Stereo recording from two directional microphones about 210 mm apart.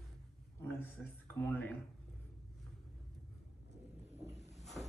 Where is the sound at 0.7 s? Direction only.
10° left (ahead or behind).